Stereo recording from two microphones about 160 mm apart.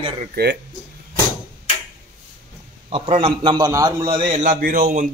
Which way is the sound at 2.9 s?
35° right (ahead or behind).